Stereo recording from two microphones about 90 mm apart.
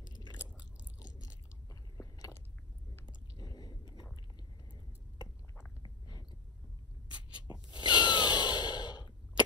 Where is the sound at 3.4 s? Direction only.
45° left (ahead or behind).